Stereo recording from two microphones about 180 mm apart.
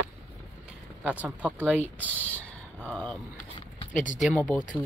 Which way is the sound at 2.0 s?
10° left (ahead or behind).